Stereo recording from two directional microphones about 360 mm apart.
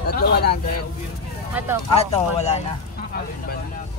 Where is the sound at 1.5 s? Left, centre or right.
Centre.